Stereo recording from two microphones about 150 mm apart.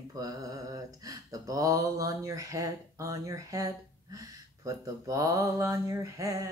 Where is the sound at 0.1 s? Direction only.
25° right (ahead or behind).